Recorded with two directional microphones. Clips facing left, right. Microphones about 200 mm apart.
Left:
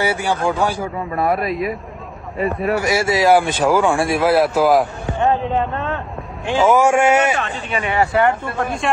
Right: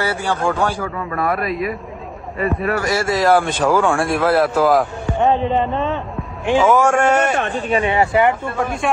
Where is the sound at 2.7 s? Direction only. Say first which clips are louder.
Left 1 dB; 10° left (ahead or behind).